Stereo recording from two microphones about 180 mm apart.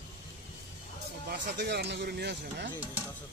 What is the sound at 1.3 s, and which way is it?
Speech, 65° right (ahead or behind).